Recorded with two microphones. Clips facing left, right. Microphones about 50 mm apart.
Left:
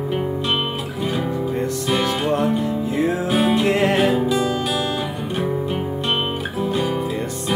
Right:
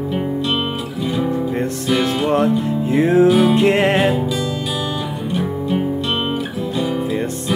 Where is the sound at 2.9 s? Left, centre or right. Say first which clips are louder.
Right 8 dB; right.